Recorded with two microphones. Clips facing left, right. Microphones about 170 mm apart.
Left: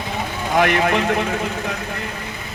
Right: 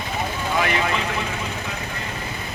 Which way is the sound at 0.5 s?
60° left (ahead or behind).